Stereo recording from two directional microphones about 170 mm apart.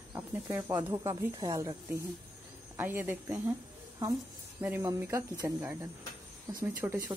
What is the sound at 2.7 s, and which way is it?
Speech, 10° right (ahead or behind).